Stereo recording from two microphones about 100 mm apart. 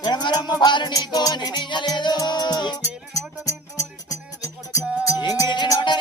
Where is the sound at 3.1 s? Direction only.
30° left (ahead or behind).